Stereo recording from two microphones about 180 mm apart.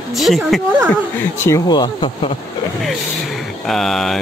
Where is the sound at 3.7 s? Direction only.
Centre (ahead or behind).